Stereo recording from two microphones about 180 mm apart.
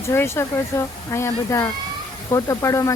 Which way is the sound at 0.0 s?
15° left (ahead or behind).